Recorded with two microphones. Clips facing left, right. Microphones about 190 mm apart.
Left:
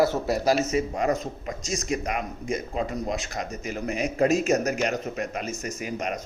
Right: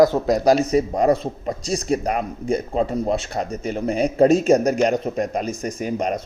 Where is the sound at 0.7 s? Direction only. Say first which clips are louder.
Right 7 dB; 35° right (ahead or behind).